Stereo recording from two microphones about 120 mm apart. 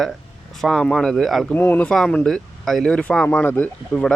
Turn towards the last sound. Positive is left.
turn(degrees=15)  # may be behind; listen again after turning